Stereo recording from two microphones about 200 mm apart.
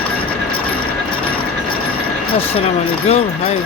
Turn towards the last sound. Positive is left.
turn(degrees=30)  # may be behind; listen again after turning